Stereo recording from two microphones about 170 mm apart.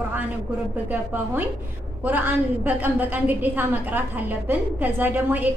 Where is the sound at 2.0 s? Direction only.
10° right (ahead or behind).